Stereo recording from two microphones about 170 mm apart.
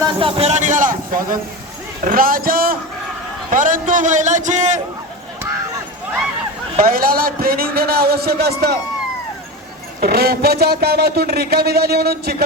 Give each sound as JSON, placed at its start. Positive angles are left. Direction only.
{"t": 0.2, "sound": "a man's voice", "side_deg": -35}
{"t": 6.7, "sound": "a man's voice", "side_deg": -55}
{"t": 10.0, "sound": "speech", "side_deg": -65}